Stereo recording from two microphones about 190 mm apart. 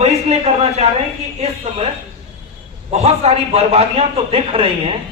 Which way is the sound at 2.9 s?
35° right (ahead or behind).